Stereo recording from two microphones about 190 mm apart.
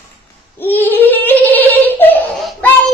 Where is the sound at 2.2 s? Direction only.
Centre (ahead or behind).